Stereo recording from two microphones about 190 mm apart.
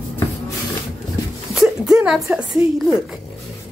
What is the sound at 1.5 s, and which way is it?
Speech, 5° right (ahead or behind).